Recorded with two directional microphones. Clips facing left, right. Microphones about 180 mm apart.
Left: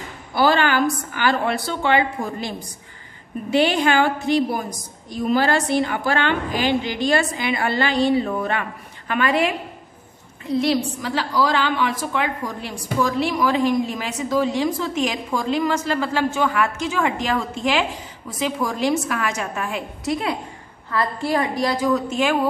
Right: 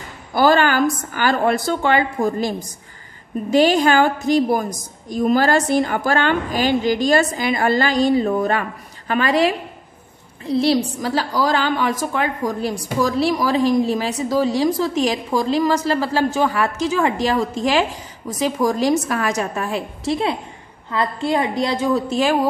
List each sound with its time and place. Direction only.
0.3 s a woman's voice: 45° right (ahead or behind)